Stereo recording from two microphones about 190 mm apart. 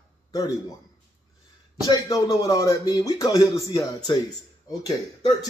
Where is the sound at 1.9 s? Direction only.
20° left (ahead or behind).